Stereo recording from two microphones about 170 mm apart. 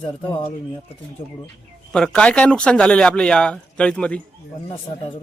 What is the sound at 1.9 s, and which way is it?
Speech, 5° left (ahead or behind).